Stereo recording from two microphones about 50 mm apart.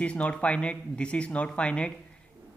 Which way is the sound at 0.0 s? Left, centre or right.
Left.